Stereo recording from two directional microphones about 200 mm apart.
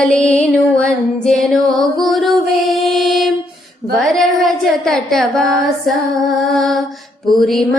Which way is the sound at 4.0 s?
Centre (ahead or behind).